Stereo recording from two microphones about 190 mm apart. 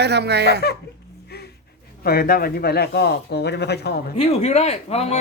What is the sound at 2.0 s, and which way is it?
Speech, 50° left (ahead or behind).